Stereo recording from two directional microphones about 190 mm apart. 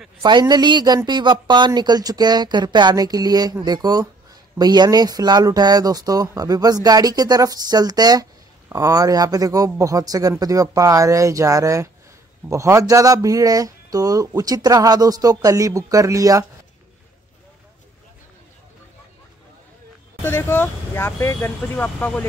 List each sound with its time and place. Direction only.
0.2 s speech: 25° right (ahead or behind)
20.2 s speech: 10° left (ahead or behind)